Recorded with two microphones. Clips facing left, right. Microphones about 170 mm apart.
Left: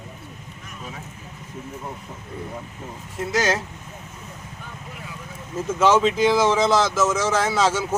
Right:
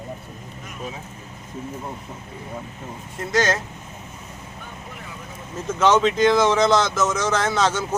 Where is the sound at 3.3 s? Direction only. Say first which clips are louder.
Right 1 dB; 5° left (ahead or behind).